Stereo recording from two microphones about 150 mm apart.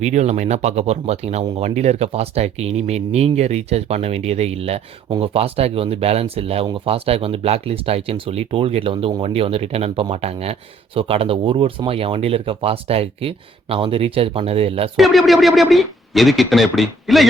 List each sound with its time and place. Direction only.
0.0 s speech: 50° right (ahead or behind)
14.9 s speech: centre (ahead or behind)